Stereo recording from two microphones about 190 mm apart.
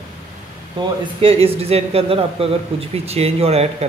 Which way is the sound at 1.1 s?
30° right (ahead or behind).